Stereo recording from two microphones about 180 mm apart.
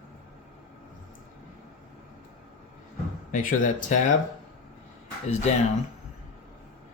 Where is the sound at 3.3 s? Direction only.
45° left (ahead or behind).